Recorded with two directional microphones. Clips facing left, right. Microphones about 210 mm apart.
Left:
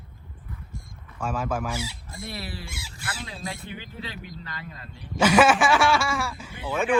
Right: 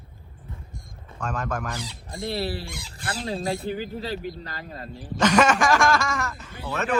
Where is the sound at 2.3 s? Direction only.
35° right (ahead or behind).